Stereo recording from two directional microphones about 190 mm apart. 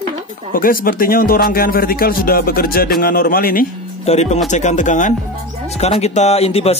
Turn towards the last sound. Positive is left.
turn(degrees=30)  # may be behind; listen again after turning